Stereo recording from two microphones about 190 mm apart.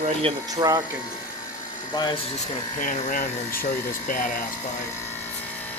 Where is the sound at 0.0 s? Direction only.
30° right (ahead or behind).